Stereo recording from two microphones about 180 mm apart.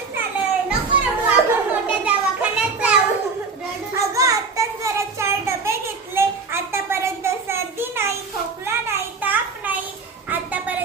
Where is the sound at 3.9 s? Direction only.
20° right (ahead or behind).